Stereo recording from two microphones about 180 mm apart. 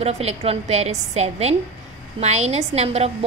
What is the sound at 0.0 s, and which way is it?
A woman's voice, 35° right (ahead or behind).